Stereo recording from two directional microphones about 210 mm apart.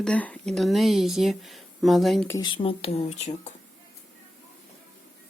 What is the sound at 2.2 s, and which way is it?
Speech, 15° left (ahead or behind).